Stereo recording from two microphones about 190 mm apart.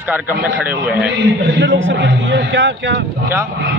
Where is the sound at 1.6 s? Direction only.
75° right (ahead or behind).